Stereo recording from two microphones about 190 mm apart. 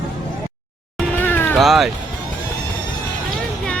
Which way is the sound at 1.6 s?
Centre (ahead or behind).